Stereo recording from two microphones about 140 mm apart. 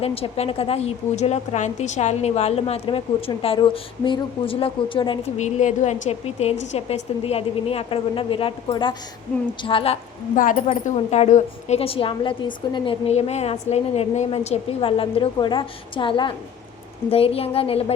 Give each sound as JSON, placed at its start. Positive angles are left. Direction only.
{"t": 0.0, "sound": "a woman's voice", "side_deg": 45}
{"t": 5.4, "sound": "a woman's voice", "side_deg": 60}
{"t": 10.3, "sound": "speech", "side_deg": 70}
{"t": 10.8, "sound": "a woman's voice", "side_deg": 50}
{"t": 13.1, "sound": "a woman's voice", "side_deg": 50}